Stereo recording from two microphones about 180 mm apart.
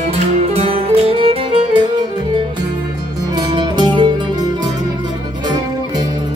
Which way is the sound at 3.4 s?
25° right (ahead or behind).